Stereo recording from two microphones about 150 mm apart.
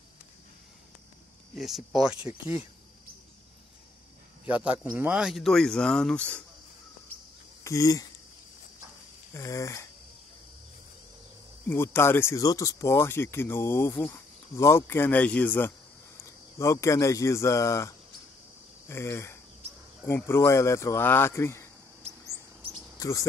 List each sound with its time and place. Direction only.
1.5 s speech: centre (ahead or behind)
4.5 s speech: 10° right (ahead or behind); by 6.4 s 10° left (ahead or behind)
7.6 s speech: 20° left (ahead or behind)
9.3 s speech: 20° left (ahead or behind)
11.7 s a man's voice: 15° left (ahead or behind)
22.0 s a sound: 45° right (ahead or behind)
22.6 s cricket: 35° right (ahead or behind)
22.9 s a sound: 20° left (ahead or behind)